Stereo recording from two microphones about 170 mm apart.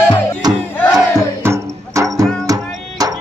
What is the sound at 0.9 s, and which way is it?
Music, 15° right (ahead or behind).